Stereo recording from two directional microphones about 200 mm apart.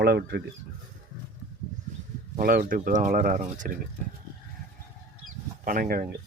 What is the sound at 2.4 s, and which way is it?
Speech, 45° right (ahead or behind).